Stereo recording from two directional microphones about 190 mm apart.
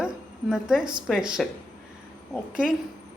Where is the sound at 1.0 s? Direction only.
5° right (ahead or behind).